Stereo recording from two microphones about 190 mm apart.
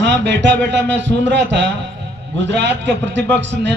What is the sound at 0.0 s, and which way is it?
A man's voice, 65° right (ahead or behind).